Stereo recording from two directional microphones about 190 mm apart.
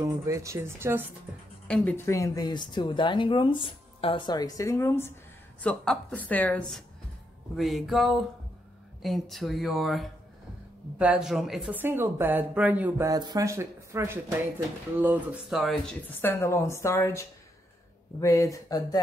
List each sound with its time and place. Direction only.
0.0 s speech: 15° right (ahead or behind)
1.7 s a woman's voice: 10° left (ahead or behind)
16.1 s a woman's voice: 10° left (ahead or behind)